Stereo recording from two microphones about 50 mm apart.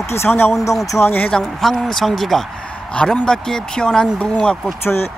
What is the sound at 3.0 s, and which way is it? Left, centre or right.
Speech, centre.